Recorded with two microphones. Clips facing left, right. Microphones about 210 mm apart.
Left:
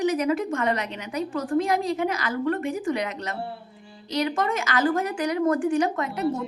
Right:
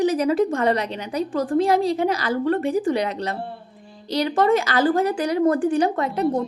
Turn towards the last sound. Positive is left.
turn(degrees=-35)  # may be behind; listen again after turning